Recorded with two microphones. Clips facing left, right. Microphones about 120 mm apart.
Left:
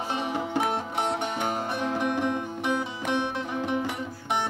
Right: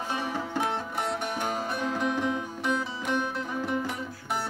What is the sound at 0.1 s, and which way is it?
Music, 20° left (ahead or behind).